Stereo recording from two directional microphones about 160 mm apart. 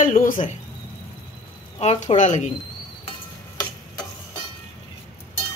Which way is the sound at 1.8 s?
40° left (ahead or behind).